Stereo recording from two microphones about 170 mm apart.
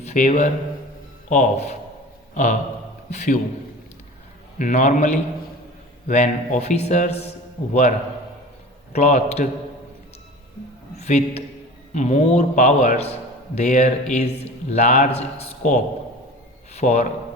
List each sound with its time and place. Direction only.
0.0 s a man's voice: 45° left (ahead or behind)
4.5 s a man's voice: 50° left (ahead or behind)
10.9 s a man's voice: 40° left (ahead or behind)